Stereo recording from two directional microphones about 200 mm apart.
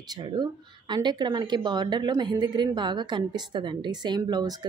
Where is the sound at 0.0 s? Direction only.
20° right (ahead or behind).